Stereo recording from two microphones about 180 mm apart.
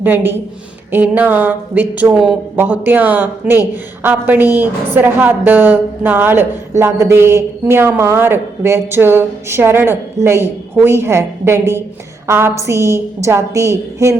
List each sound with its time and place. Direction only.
0.0 s speech: 10° right (ahead or behind)